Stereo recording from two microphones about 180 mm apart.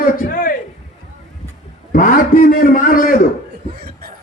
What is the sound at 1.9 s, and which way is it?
A man's voice, 50° left (ahead or behind).